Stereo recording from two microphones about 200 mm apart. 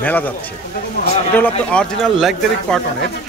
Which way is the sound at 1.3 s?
5° left (ahead or behind).